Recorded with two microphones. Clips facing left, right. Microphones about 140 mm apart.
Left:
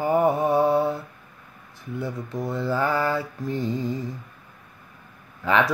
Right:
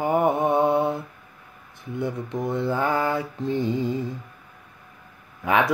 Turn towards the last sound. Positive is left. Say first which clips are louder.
# even
turn(degrees=-15)  # may be behind; listen again after turning